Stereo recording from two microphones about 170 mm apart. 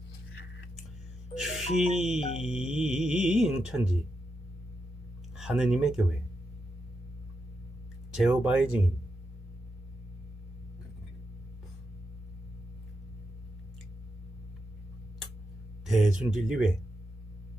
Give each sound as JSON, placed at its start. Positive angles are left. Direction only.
{"t": 1.4, "sound": "speech", "side_deg": -5}
{"t": 5.4, "sound": "speech", "side_deg": -5}
{"t": 8.1, "sound": "speech", "side_deg": -5}
{"t": 15.9, "sound": "speech", "side_deg": -5}